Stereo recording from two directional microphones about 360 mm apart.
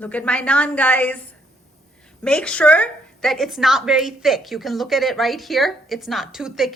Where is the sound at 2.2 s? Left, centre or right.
Centre.